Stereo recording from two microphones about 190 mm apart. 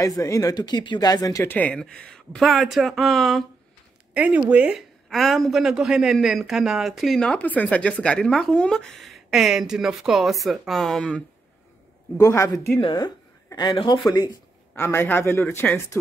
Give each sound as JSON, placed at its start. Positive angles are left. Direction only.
{"t": 0.0, "sound": "speech", "side_deg": 15}
{"t": 12.2, "sound": "speech", "side_deg": 15}
{"t": 14.8, "sound": "speech", "side_deg": 10}